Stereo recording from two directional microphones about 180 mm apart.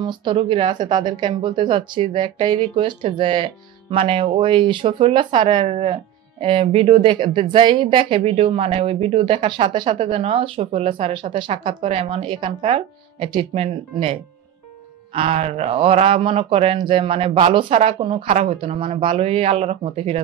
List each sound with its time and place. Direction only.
0.0 s speech: 25° right (ahead or behind)
15.1 s speech: 35° right (ahead or behind)